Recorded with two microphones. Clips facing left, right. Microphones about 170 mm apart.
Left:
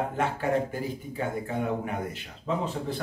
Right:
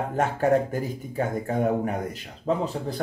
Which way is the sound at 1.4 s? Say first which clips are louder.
Right 5 dB; 40° right (ahead or behind).